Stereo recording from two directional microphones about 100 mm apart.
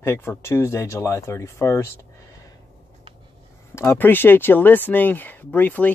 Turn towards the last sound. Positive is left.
turn(degrees=15)  # may be behind; listen again after turning